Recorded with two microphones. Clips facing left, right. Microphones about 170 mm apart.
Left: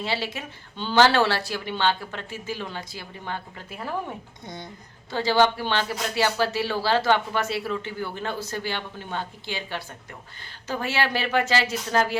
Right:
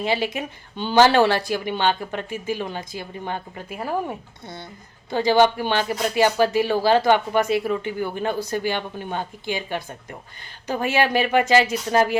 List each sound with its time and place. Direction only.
0.0 s speech: 15° right (ahead or behind)
5.1 s speech: 15° right (ahead or behind)